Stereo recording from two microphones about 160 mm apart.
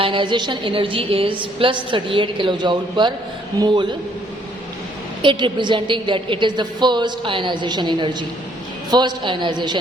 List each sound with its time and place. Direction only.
0.0 s a woman's voice: 30° right (ahead or behind)
5.2 s a woman's voice: 30° right (ahead or behind)